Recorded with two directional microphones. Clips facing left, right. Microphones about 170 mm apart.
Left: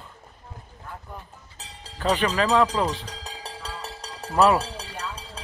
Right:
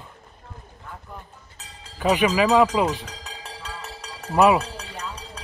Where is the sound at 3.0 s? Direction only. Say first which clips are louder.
Left 1 dB; 35° left (ahead or behind).